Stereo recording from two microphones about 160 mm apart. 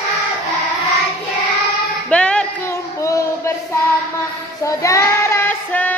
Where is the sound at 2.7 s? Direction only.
20° left (ahead or behind).